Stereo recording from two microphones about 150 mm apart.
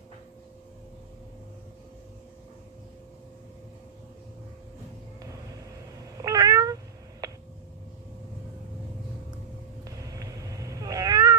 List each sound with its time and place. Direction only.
6.1 s cat: 25° right (ahead or behind)
9.8 s cat: 20° right (ahead or behind)